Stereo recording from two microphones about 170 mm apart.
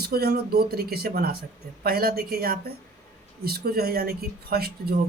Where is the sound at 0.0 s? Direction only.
65° right (ahead or behind).